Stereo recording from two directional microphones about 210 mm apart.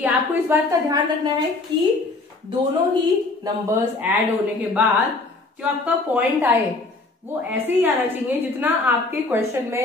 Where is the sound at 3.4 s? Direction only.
10° right (ahead or behind).